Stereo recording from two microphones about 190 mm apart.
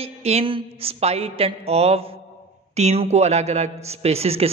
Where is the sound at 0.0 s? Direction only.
35° right (ahead or behind).